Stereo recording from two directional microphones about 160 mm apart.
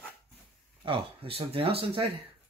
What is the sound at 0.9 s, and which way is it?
Speech, 35° right (ahead or behind).